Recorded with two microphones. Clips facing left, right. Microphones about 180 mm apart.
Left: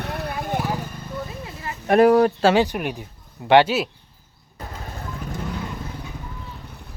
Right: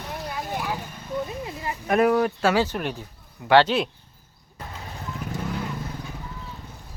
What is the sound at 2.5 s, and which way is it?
Speech, 15° left (ahead or behind).